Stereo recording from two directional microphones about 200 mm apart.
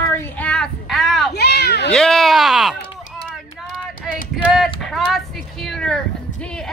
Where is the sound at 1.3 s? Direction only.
55° left (ahead or behind).